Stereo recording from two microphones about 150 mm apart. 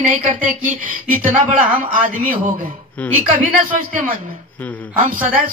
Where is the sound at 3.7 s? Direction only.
65° right (ahead or behind).